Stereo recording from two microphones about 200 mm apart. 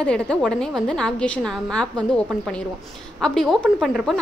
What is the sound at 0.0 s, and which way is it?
A woman's voice, 5° left (ahead or behind).